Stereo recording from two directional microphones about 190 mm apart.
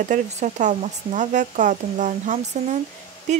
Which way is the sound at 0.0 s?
40° right (ahead or behind).